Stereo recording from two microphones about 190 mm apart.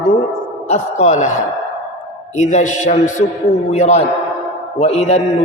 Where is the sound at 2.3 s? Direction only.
40° left (ahead or behind).